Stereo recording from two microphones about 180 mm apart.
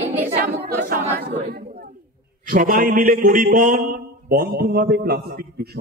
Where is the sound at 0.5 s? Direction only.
60° right (ahead or behind).